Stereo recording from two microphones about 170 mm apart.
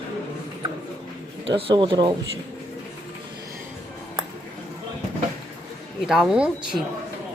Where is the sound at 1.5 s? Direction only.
30° right (ahead or behind).